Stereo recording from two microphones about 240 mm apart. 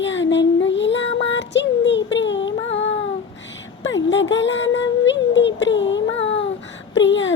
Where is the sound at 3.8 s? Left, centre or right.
Left.